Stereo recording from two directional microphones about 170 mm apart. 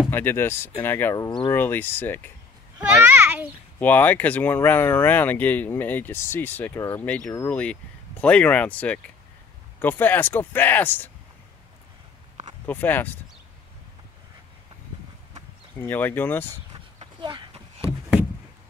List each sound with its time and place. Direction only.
0.1 s speech: 10° left (ahead or behind)
1.5 s speech: 10° left (ahead or behind)
3.1 s a sound: 10° right (ahead or behind)
3.8 s speech: 10° left (ahead or behind)
12.6 s speech: 10° left (ahead or behind)
15.8 s speech: 10° left (ahead or behind)
17.0 s a sound: 30° right (ahead or behind)